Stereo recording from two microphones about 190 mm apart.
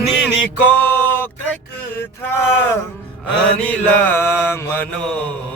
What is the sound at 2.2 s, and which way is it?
Mantra, 10° left (ahead or behind).